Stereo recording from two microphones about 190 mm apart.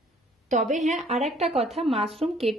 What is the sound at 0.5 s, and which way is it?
Speech, 40° right (ahead or behind).